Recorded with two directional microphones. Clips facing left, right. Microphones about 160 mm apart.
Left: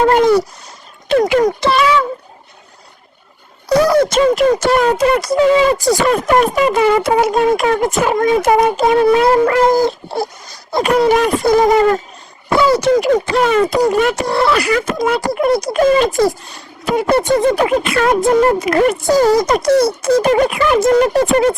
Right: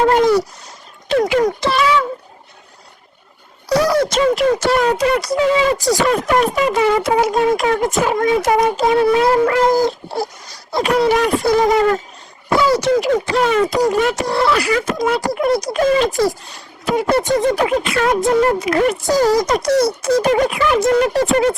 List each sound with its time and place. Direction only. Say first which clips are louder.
0.1 s a sound: left 2 dB; 60° left (ahead or behind)
1.0 s speech: left 3 dB; 60° left (ahead or behind)
3.7 s speech: left 3 dB; 55° left (ahead or behind)
10.7 s speech: left 3 dB; 50° left (ahead or behind)